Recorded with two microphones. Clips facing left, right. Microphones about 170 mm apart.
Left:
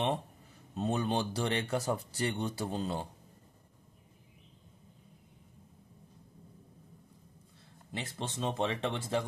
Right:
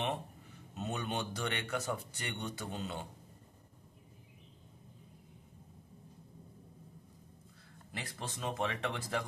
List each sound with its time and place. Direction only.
0.7 s speech: 30° left (ahead or behind)
7.9 s speech: 25° left (ahead or behind)